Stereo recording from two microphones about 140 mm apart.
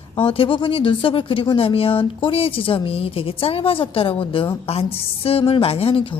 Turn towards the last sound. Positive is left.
turn(degrees=45)  # may be behind; listen again after turning